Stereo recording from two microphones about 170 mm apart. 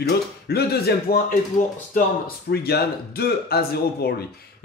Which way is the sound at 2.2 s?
70° left (ahead or behind).